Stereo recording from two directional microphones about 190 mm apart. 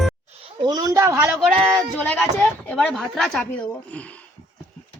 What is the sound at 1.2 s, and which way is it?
Speech, centre (ahead or behind).